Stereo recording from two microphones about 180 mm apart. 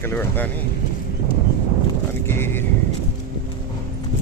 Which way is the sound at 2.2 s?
10° left (ahead or behind).